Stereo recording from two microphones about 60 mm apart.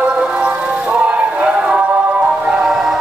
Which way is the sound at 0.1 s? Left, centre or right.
Centre.